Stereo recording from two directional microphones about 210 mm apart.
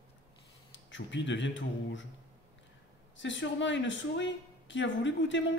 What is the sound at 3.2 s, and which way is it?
A woman's voice, 60° left (ahead or behind).